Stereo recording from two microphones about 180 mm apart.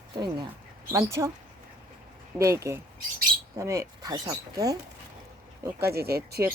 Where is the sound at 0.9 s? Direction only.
15° right (ahead or behind).